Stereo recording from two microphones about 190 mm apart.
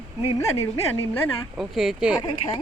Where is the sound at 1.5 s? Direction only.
Centre (ahead or behind).